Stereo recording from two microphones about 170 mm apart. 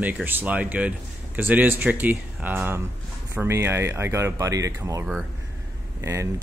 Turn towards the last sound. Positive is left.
turn(degrees=-15)  # may be behind; listen again after turning